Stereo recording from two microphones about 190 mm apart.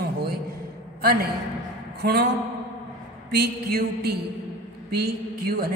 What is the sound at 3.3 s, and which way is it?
A woman's voice, 55° right (ahead or behind).